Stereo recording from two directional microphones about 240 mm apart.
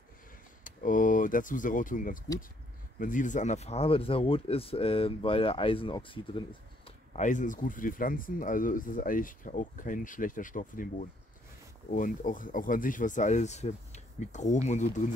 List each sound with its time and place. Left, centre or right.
0.7 s speech: left
7.2 s speech: left